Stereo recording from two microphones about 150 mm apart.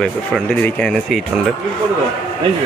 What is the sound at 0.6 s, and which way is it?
Speech, 5° left (ahead or behind).